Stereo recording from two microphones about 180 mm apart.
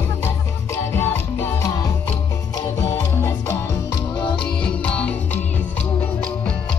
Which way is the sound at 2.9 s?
15° left (ahead or behind).